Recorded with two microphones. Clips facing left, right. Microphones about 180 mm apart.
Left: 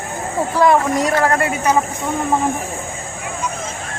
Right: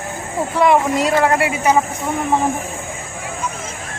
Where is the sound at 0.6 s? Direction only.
20° right (ahead or behind).